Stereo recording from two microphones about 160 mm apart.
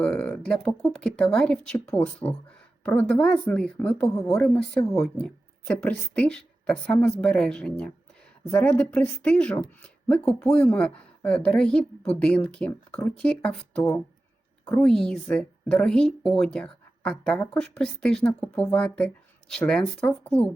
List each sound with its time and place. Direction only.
0.0 s speech: 10° left (ahead or behind)